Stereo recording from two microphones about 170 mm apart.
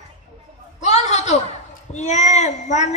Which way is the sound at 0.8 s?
40° left (ahead or behind).